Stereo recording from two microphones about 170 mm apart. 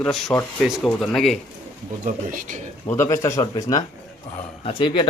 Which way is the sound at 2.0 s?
55° right (ahead or behind).